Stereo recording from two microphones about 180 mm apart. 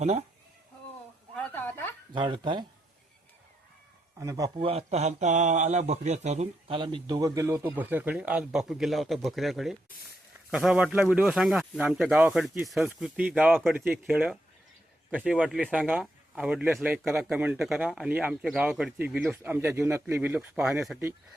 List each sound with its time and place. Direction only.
0.0 s speech: 35° right (ahead or behind)
1.4 s a sound: 10° left (ahead or behind)
2.1 s speech: 25° right (ahead or behind)
4.2 s speech: 15° right (ahead or behind)
4.5 s speech: 30° right (ahead or behind)
6.7 s speech: 25° right (ahead or behind); by 21.0 s 5° right (ahead or behind)